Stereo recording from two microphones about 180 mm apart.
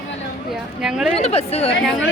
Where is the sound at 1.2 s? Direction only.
35° left (ahead or behind).